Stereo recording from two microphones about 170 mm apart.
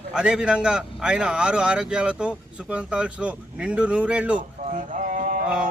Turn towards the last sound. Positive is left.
turn(degrees=-5)  # may be behind; listen again after turning